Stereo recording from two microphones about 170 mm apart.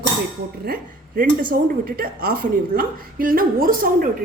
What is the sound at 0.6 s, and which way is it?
A woman's voice, 60° right (ahead or behind).